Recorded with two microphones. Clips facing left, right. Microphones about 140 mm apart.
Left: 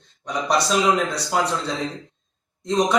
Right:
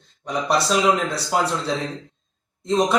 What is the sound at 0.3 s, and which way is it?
A man's voice, 5° right (ahead or behind).